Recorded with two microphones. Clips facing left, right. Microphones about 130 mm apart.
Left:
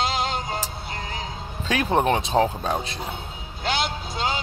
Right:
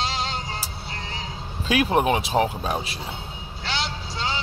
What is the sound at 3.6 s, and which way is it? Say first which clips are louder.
Vehicle: left 4 dB; 50° left (ahead or behind).